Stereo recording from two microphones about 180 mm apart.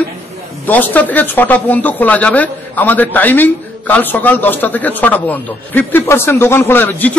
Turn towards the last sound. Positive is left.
turn(degrees=10)  # may be behind; listen again after turning